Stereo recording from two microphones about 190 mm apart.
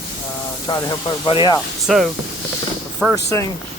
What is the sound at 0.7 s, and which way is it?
Speech, 20° left (ahead or behind).